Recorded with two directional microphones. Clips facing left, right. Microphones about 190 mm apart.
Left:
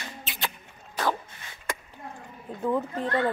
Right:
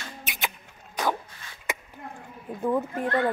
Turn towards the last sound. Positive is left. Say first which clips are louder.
# right 1 dB
turn(degrees=-10)  # may be behind; listen again after turning